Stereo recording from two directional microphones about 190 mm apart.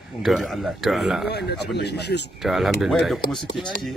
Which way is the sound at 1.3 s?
60° left (ahead or behind).